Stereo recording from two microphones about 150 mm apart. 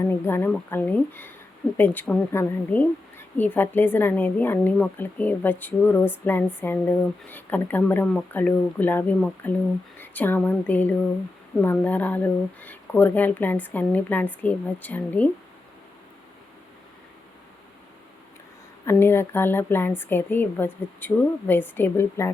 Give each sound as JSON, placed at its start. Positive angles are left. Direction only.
{"t": 0.0, "sound": "a woman's voice", "side_deg": 15}
{"t": 18.9, "sound": "a woman's voice", "side_deg": 15}